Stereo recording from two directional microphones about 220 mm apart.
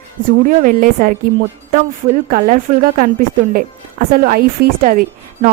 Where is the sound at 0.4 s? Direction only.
40° right (ahead or behind).